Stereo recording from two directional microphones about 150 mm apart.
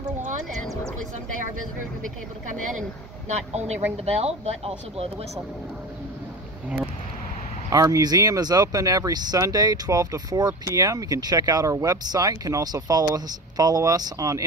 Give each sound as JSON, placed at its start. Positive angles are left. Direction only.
{"t": 0.2, "sound": "a sound", "side_deg": -55}
{"t": 3.3, "sound": "speech", "side_deg": -50}
{"t": 7.7, "sound": "speech", "side_deg": -25}